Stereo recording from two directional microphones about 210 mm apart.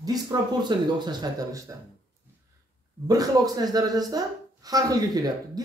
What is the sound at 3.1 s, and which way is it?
A man's voice, 15° right (ahead or behind).